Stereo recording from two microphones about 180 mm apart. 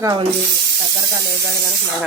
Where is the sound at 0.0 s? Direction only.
25° right (ahead or behind).